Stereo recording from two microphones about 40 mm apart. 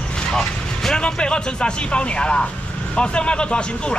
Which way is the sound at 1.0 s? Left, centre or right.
Left.